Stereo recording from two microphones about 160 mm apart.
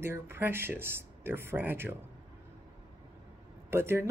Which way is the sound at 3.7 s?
15° right (ahead or behind).